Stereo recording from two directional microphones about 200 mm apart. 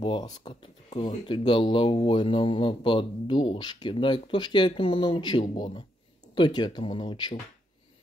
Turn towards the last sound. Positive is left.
turn(degrees=20)  # may be behind; listen again after turning